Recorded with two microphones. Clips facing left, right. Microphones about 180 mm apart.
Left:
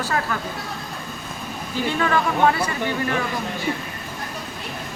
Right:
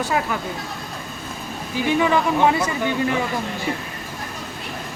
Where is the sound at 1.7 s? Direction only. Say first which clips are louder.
Right 3 dB; 15° right (ahead or behind).